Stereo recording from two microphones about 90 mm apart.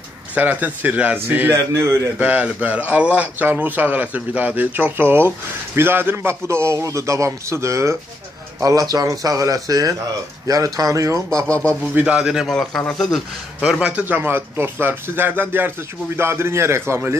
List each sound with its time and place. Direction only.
0.3 s speech: 20° right (ahead or behind)
1.5 s a man's voice: 35° right (ahead or behind)
2.1 s a man's voice: 15° right (ahead or behind); by 11.2 s 35° right (ahead or behind)
11.9 s speech: 15° right (ahead or behind)
12.5 s speech: 5° left (ahead or behind); by 17.2 s 30° right (ahead or behind)